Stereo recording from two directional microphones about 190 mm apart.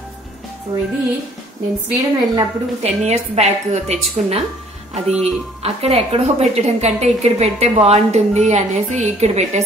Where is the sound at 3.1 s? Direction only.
35° right (ahead or behind).